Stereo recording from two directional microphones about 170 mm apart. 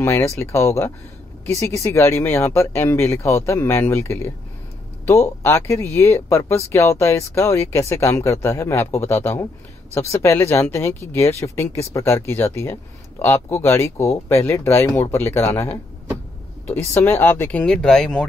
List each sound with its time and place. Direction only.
0.4 s speech: 15° left (ahead or behind)
5.4 s speech: 15° left (ahead or behind)